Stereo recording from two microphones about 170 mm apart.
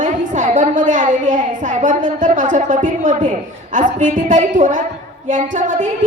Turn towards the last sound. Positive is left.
turn(degrees=-50)  # may be behind; listen again after turning